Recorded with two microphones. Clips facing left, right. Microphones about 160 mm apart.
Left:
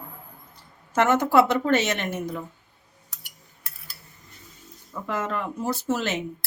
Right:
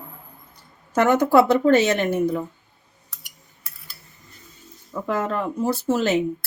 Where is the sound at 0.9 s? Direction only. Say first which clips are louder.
Right 3 dB; 35° right (ahead or behind).